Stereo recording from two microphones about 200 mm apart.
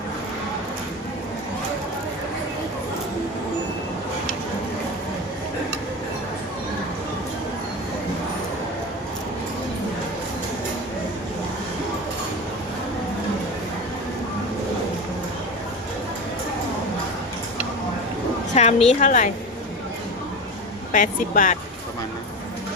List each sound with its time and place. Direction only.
18.5 s a woman's voice: 30° left (ahead or behind)
20.9 s speech: 40° left (ahead or behind)